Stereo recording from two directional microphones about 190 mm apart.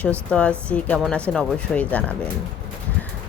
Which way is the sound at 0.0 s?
5° left (ahead or behind).